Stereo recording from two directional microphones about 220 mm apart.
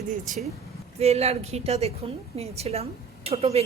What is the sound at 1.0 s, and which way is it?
A woman's voice, 30° right (ahead or behind).